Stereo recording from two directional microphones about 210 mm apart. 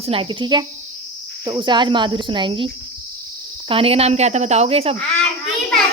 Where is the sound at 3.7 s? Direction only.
25° right (ahead or behind).